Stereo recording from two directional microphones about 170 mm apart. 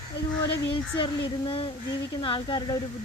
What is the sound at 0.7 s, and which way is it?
Speech, 30° left (ahead or behind).